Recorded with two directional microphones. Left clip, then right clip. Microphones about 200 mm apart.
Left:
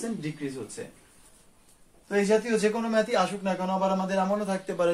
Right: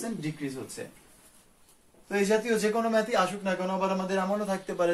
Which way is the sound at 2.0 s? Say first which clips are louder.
Left 2 dB; 10° left (ahead or behind).